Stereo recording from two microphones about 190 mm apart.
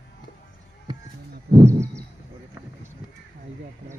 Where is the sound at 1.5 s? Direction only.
15° right (ahead or behind).